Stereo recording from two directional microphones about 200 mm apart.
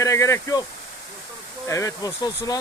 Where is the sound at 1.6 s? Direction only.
15° left (ahead or behind).